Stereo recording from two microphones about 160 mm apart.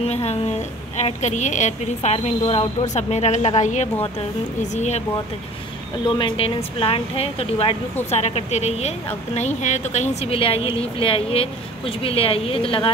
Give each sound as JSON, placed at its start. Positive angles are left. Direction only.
{"t": 0.0, "sound": "a woman's voice", "side_deg": 40}
{"t": 6.0, "sound": "a woman's voice", "side_deg": 30}